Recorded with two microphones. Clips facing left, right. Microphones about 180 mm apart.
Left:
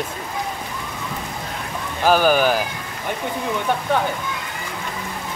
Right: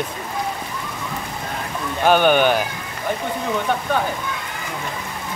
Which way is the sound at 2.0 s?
Centre (ahead or behind).